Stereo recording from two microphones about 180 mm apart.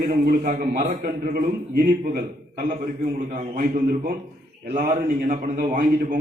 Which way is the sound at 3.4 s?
50° right (ahead or behind).